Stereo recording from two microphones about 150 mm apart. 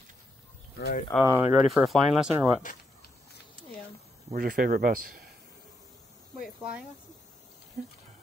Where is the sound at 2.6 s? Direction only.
60° left (ahead or behind).